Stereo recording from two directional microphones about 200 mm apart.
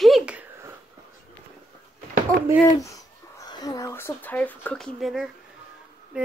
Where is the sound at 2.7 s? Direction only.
15° left (ahead or behind).